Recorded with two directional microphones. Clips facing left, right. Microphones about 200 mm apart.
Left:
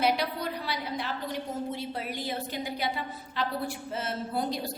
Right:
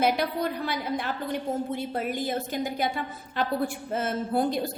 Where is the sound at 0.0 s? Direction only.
50° right (ahead or behind).